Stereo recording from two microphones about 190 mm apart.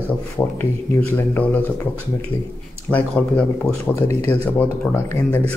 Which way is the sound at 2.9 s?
5° left (ahead or behind).